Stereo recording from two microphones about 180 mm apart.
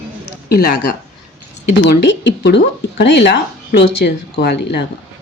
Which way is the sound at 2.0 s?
75° left (ahead or behind).